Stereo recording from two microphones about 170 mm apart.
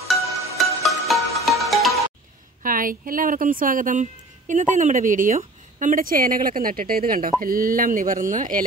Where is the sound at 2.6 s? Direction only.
55° right (ahead or behind).